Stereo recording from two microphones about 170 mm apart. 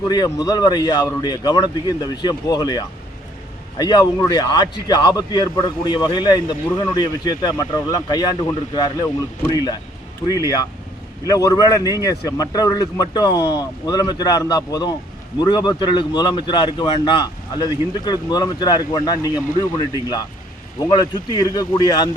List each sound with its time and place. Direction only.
0.1 s speech: 25° left (ahead or behind)